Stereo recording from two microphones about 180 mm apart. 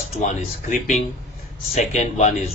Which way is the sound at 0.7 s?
45° left (ahead or behind).